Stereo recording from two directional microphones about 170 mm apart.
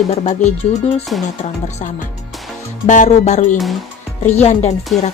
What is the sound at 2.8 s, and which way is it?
Speech, 45° left (ahead or behind).